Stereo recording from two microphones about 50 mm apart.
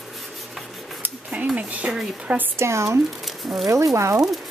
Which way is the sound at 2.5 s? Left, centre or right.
Right.